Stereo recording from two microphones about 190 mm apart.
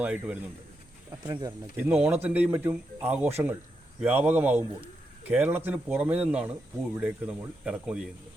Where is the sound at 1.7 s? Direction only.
10° right (ahead or behind).